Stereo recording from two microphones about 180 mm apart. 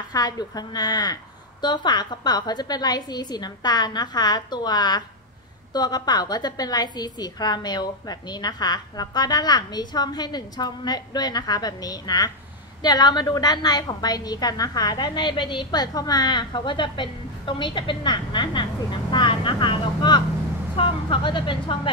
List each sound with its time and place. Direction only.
0.1 s a woman's voice: 20° left (ahead or behind)